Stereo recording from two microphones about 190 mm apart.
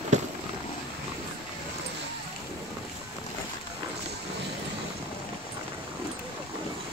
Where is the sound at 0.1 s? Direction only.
40° right (ahead or behind).